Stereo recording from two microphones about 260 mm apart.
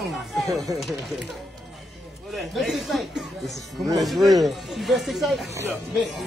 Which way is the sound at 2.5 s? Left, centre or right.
Centre.